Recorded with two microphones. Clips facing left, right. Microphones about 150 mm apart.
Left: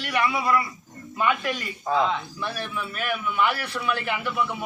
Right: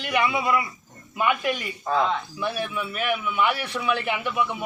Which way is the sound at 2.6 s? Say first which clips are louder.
Right 3 dB; 10° right (ahead or behind).